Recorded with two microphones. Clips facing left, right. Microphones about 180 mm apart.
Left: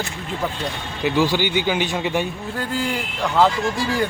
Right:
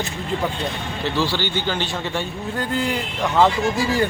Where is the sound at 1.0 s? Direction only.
15° left (ahead or behind).